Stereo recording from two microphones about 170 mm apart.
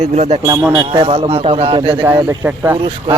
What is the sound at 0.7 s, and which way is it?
Speech, 30° right (ahead or behind).